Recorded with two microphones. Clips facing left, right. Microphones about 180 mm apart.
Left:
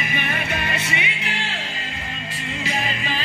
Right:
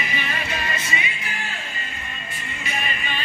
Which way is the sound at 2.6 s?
90° left.